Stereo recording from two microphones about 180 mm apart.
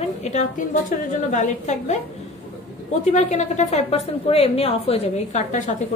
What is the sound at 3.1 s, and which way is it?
A woman's voice, 40° left (ahead or behind).